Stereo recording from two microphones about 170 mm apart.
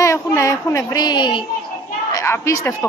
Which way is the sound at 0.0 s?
15° left (ahead or behind).